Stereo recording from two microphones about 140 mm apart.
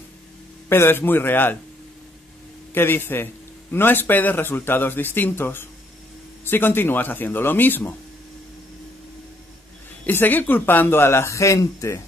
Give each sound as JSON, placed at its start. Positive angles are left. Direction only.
{"t": 0.7, "sound": "speech", "side_deg": 15}
{"t": 2.7, "sound": "speech", "side_deg": 15}
{"t": 10.0, "sound": "speech", "side_deg": 15}